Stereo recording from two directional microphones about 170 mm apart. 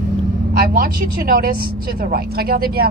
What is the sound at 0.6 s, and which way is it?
Speech, 60° right (ahead or behind).